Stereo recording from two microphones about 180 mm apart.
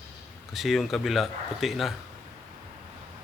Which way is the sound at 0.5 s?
Centre (ahead or behind).